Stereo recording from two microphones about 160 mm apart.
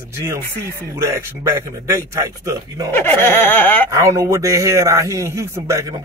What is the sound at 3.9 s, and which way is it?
A man's voice, 20° right (ahead or behind).